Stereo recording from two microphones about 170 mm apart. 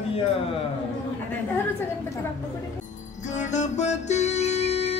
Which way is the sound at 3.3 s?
45° left (ahead or behind).